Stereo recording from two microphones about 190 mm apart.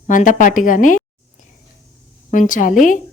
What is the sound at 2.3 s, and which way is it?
Speech, 45° left (ahead or behind).